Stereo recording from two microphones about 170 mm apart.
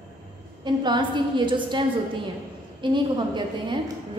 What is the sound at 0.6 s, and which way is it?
A woman's voice, 25° right (ahead or behind).